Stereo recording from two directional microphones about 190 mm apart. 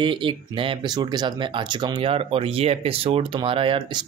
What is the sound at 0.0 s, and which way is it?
Speech, 25° right (ahead or behind).